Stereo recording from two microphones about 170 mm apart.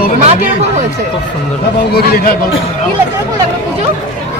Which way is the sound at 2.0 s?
65° left (ahead or behind).